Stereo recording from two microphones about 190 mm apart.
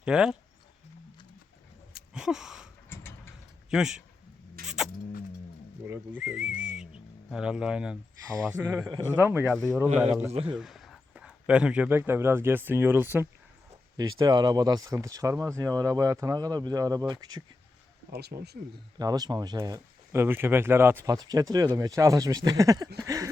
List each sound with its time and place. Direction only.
0.0 s a man's voice: 5° right (ahead or behind)
2.1 s a sound: 5° right (ahead or behind)
2.9 s mechanisms: 10° left (ahead or behind)
3.7 s a man's voice: 5° right (ahead or behind)
4.6 s rodents: centre (ahead or behind)
5.8 s a man's voice: 10° right (ahead or behind)
18.1 s speech: 60° right (ahead or behind)
18.9 s speech: 20° right (ahead or behind)